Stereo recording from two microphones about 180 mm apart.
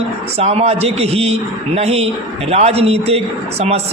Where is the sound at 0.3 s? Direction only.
35° right (ahead or behind).